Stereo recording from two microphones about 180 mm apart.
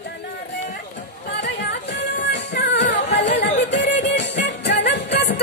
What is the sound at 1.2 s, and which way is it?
Music, 65° left (ahead or behind).